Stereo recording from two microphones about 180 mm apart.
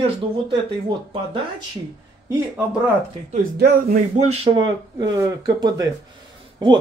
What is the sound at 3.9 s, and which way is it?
Speech, 40° right (ahead or behind).